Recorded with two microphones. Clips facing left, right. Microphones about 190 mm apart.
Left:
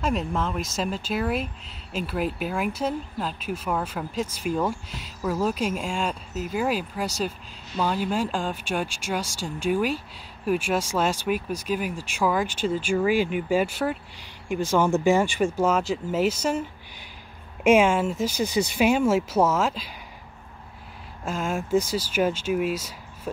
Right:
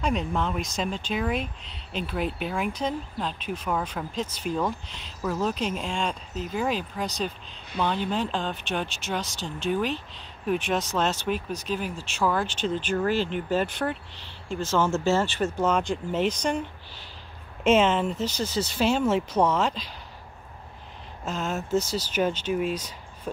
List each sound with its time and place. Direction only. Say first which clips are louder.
0.0 s speech: left 1 dB; centre (ahead or behind)
17.6 s speech: left 2 dB; 10° left (ahead or behind)
21.2 s speech: left 2 dB; 10° left (ahead or behind)